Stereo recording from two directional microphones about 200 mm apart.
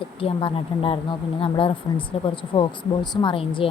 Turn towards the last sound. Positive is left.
turn(degrees=25)  # may be behind; listen again after turning